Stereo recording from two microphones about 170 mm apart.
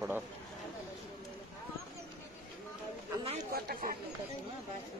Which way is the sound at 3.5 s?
60° right (ahead or behind).